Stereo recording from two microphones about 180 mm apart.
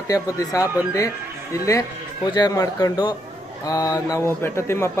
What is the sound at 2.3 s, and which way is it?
Speech, 20° left (ahead or behind).